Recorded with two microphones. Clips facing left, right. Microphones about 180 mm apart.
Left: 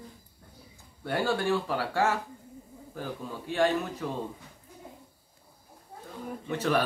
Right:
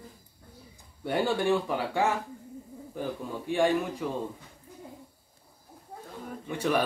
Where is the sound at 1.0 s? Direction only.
15° right (ahead or behind).